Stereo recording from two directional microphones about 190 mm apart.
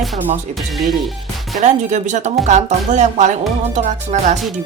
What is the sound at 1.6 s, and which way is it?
Speech, 40° right (ahead or behind).